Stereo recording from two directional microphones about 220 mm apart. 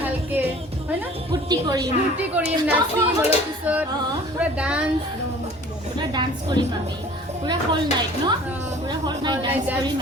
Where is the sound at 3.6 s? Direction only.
5° right (ahead or behind).